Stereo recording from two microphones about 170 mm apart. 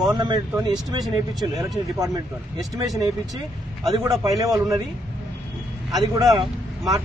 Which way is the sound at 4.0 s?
20° right (ahead or behind).